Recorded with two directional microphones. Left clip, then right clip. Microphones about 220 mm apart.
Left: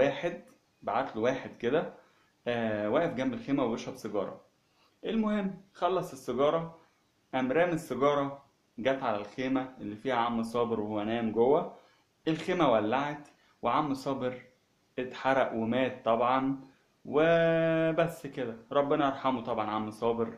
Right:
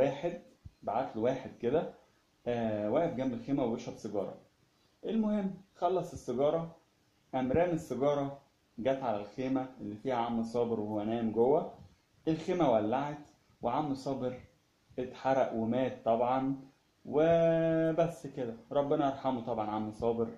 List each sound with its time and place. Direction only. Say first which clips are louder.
0.0 s speech: left 3 dB; 30° left (ahead or behind)